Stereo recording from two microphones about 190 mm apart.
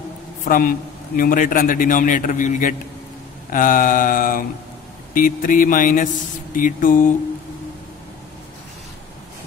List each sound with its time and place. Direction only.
0.5 s a man's voice: 50° left (ahead or behind)